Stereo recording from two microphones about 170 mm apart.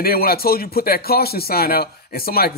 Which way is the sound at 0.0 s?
65° left (ahead or behind).